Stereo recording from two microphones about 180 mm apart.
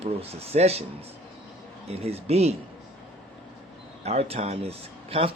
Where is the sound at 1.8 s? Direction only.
35° right (ahead or behind).